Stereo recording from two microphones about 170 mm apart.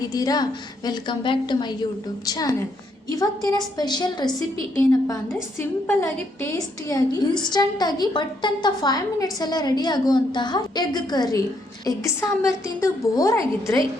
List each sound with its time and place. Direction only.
0.0 s a woman's voice: 20° left (ahead or behind)